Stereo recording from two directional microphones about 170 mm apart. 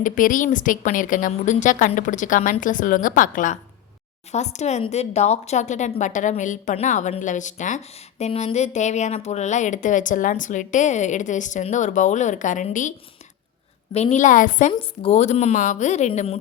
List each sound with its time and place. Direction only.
0.0 s speech: 50° left (ahead or behind)
13.9 s speech: 40° left (ahead or behind)
14.7 s a woman's voice: 35° left (ahead or behind)